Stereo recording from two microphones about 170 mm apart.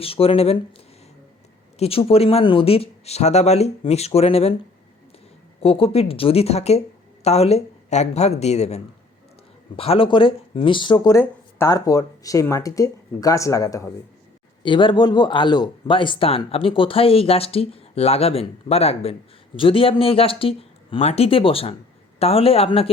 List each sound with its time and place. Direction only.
0.0 s speech: 35° left (ahead or behind)
1.8 s speech: 35° left (ahead or behind)